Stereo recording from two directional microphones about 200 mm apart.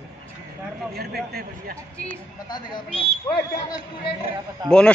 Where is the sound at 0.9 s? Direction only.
50° right (ahead or behind).